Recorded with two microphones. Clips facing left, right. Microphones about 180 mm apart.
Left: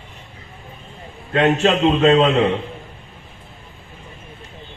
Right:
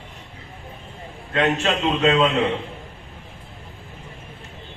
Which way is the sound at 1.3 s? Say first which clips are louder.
Left 5 dB; 35° left (ahead or behind).